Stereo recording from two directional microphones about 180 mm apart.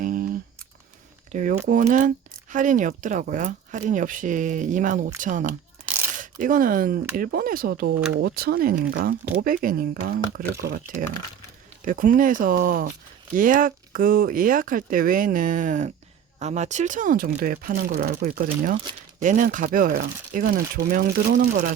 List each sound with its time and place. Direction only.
0.0 s computer keyboard: 50° right (ahead or behind)
1.3 s speech: 45° right (ahead or behind)
5.5 s tearing: 10° right (ahead or behind)
6.1 s speech: 50° right (ahead or behind)